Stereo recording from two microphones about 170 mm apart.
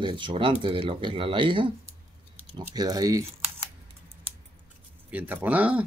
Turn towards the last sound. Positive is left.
turn(degrees=-10)  # may be behind; listen again after turning